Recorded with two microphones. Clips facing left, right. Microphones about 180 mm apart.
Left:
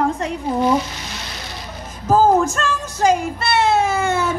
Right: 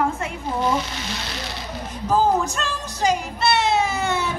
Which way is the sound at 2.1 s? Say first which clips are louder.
Left 5 dB; 45° left (ahead or behind).